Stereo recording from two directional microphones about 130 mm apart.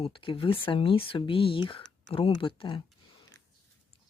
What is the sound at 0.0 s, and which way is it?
Speech, 45° left (ahead or behind).